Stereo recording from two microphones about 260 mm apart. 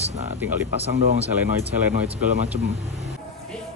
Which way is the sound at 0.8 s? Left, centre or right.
Right.